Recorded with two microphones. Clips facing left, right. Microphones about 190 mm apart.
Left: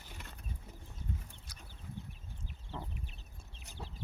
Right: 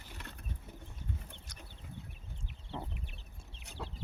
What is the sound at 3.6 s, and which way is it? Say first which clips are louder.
Chicken: right 4 dB; 65° right (ahead or behind).